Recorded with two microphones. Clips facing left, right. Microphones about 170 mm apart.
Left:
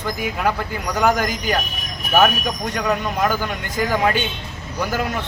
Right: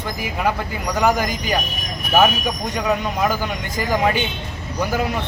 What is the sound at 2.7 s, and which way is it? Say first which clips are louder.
Speech: even; 5° right (ahead or behind).